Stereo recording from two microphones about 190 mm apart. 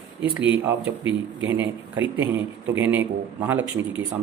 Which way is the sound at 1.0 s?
75° right (ahead or behind).